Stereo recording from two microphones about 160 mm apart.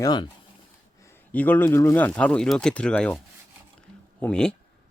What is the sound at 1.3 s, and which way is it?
Speech, 10° left (ahead or behind).